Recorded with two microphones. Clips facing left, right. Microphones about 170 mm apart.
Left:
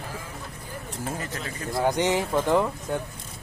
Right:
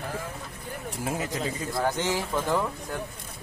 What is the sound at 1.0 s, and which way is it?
Music, 10° right (ahead or behind).